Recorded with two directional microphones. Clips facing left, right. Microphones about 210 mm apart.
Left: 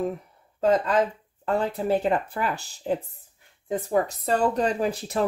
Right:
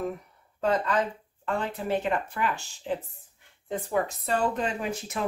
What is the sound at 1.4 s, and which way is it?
Speech, 40° left (ahead or behind).